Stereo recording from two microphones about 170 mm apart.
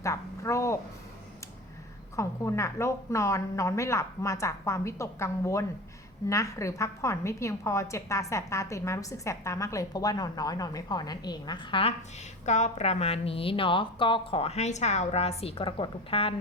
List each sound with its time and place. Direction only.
0.0 s a sound: 20° left (ahead or behind)
2.1 s a woman's voice: 15° left (ahead or behind)
12.5 s a woman's voice: 45° left (ahead or behind)